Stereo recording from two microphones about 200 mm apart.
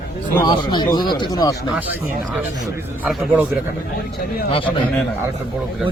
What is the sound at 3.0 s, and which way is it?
Speech, 5° right (ahead or behind).